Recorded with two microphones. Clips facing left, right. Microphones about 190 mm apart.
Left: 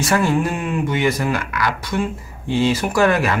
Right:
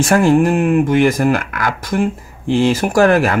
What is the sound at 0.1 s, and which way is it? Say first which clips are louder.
Speech: right 7 dB; 45° right (ahead or behind).